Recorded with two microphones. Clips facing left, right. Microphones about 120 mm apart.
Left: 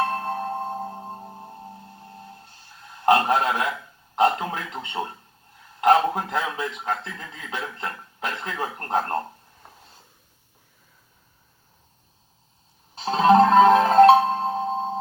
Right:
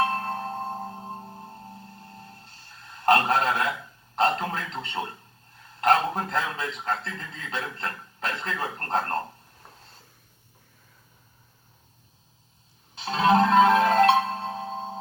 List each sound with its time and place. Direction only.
0.1 s marimba: 20° left (ahead or behind)
2.0 s music: 20° left (ahead or behind)
3.1 s a man's voice: 15° left (ahead or behind)
13.0 s music: 35° left (ahead or behind)